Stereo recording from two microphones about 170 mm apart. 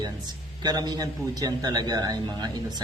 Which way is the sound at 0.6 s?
25° right (ahead or behind).